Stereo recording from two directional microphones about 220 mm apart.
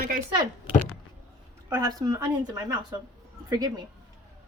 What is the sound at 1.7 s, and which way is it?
Speech, 15° right (ahead or behind).